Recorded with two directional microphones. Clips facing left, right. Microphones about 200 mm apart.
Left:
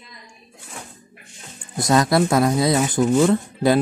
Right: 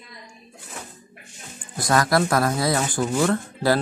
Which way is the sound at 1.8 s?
25° left (ahead or behind).